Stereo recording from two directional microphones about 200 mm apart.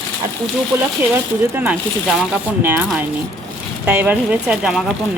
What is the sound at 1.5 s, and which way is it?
Speech, 10° right (ahead or behind).